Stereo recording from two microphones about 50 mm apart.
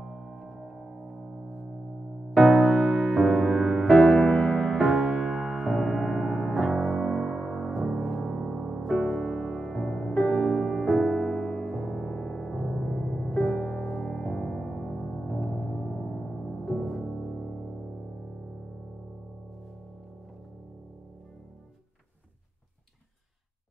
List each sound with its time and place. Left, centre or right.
0.0 s music: centre
0.4 s singing bowl: centre
2.3 s music: centre
6.7 s music: centre
12.1 s music: centre